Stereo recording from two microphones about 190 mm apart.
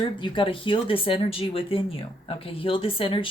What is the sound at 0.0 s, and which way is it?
Speech, 25° left (ahead or behind).